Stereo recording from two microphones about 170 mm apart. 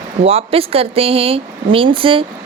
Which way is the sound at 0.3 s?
35° right (ahead or behind).